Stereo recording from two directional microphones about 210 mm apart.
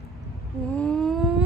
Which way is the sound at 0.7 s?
5° left (ahead or behind).